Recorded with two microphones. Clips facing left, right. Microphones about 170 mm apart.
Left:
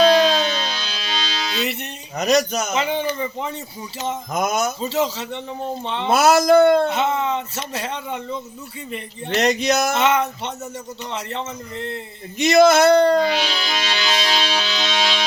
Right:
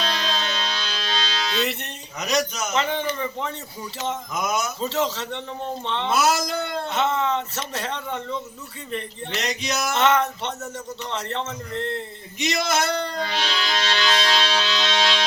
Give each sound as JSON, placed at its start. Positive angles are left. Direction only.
{"t": 0.2, "sound": "music", "side_deg": 5}
{"t": 2.1, "sound": "speech", "side_deg": 45}
{"t": 2.7, "sound": "speech", "side_deg": 5}
{"t": 4.3, "sound": "speech", "side_deg": 50}
{"t": 4.8, "sound": "speech", "side_deg": 5}
{"t": 6.1, "sound": "speech", "side_deg": 60}
{"t": 6.9, "sound": "speech", "side_deg": 10}
{"t": 9.3, "sound": "speech", "side_deg": 50}
{"t": 10.0, "sound": "speech", "side_deg": 10}
{"t": 12.4, "sound": "speech", "side_deg": 60}
{"t": 13.3, "sound": "speech", "side_deg": 5}
{"t": 14.3, "sound": "music", "side_deg": 10}